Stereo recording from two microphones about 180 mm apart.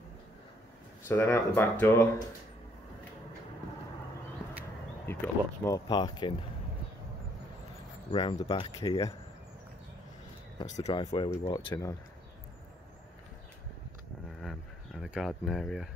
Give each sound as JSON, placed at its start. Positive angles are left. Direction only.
{"t": 1.0, "sound": "speech", "side_deg": 15}
{"t": 5.0, "sound": "speech", "side_deg": 15}
{"t": 8.1, "sound": "speech", "side_deg": 25}
{"t": 10.9, "sound": "speech", "side_deg": 25}
{"t": 14.4, "sound": "a sound", "side_deg": 0}